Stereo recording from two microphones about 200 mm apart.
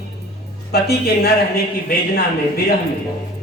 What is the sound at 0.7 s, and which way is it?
A man's voice, 50° left (ahead or behind).